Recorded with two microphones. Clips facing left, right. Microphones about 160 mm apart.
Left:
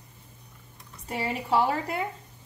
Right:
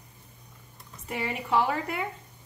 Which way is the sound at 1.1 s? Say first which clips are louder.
Left 2 dB; 30° left (ahead or behind).